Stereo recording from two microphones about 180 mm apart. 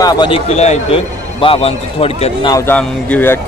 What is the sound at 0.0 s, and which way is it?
Speech, 25° left (ahead or behind).